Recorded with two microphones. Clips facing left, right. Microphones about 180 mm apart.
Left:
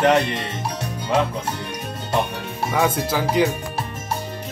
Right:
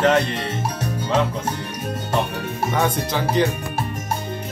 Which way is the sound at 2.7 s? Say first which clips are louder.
Left 2 dB; 5° left (ahead or behind).